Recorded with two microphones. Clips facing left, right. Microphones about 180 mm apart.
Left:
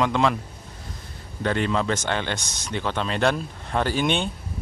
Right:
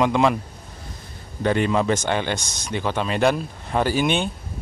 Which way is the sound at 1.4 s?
15° right (ahead or behind).